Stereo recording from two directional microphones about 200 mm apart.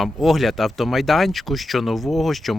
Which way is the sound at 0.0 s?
Centre (ahead or behind).